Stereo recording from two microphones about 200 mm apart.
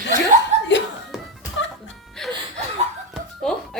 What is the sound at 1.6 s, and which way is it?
Music, 70° left (ahead or behind).